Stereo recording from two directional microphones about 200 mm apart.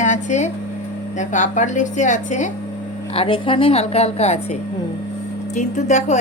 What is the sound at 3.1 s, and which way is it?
A woman's voice, 25° left (ahead or behind).